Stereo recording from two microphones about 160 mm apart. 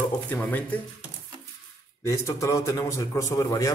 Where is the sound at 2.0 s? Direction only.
20° left (ahead or behind).